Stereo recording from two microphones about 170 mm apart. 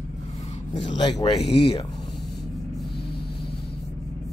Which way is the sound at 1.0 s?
25° left (ahead or behind).